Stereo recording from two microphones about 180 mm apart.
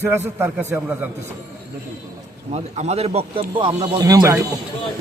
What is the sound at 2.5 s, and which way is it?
Speech, 35° right (ahead or behind).